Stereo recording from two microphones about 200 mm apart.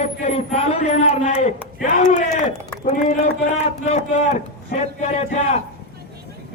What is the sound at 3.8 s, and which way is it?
Speech, 35° left (ahead or behind).